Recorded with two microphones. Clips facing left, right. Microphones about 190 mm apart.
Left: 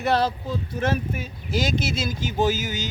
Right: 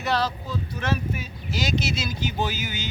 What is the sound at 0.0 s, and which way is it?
Speech, 55° left (ahead or behind).